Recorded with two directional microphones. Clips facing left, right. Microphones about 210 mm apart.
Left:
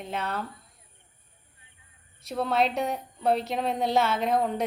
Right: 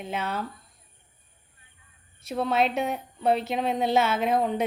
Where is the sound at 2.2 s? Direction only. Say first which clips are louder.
Right 1 dB; centre (ahead or behind).